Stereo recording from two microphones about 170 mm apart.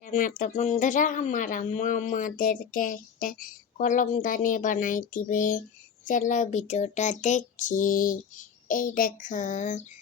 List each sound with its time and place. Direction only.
0.0 s speech: 50° left (ahead or behind)